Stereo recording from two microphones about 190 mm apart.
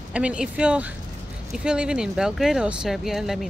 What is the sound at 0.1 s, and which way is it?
Speech, 5° right (ahead or behind).